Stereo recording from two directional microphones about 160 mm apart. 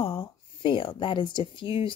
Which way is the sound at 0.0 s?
35° left (ahead or behind).